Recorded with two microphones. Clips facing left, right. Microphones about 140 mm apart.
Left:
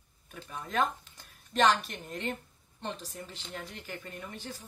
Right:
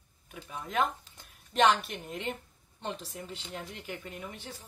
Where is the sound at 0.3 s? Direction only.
10° right (ahead or behind).